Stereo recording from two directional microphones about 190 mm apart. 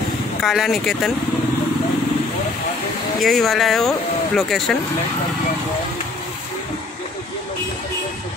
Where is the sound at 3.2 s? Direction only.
Centre (ahead or behind).